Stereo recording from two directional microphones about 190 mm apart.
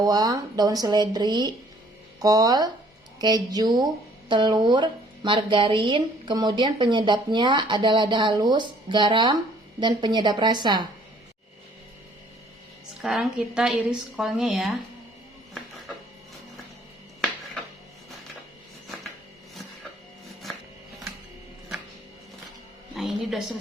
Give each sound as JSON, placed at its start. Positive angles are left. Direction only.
{"t": 0.0, "sound": "speech", "side_deg": -20}
{"t": 13.0, "sound": "a woman's voice", "side_deg": 0}
{"t": 23.0, "sound": "a woman's voice", "side_deg": 0}